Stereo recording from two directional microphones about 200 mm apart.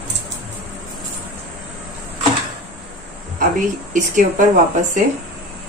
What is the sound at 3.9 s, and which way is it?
Speech, 40° right (ahead or behind).